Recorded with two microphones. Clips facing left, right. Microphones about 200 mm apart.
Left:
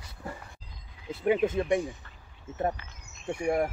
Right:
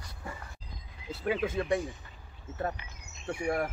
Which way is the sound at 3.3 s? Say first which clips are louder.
Left 4 dB; 15° left (ahead or behind).